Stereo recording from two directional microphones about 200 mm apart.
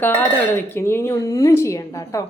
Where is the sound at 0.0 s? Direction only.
10° left (ahead or behind).